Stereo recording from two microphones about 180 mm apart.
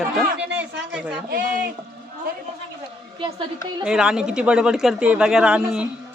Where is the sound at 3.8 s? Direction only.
5° right (ahead or behind).